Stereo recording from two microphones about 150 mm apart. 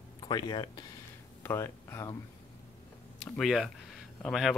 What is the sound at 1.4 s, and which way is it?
Speech, 15° left (ahead or behind).